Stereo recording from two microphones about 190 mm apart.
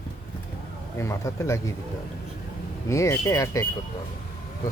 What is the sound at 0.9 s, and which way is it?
Speech, 15° left (ahead or behind).